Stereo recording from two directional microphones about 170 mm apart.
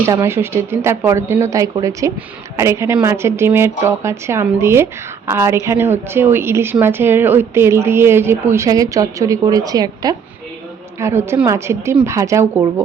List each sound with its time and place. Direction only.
0.0 s a woman's voice: 15° right (ahead or behind)